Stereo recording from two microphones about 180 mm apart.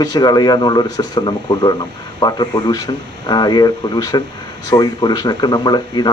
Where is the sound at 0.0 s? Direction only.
20° left (ahead or behind).